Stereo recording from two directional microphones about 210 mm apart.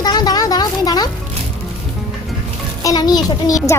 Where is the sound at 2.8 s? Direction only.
15° left (ahead or behind).